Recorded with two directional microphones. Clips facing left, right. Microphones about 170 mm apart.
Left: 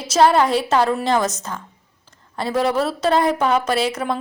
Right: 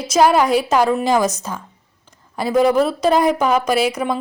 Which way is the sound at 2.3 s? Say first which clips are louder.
Right 5 dB; 5° right (ahead or behind).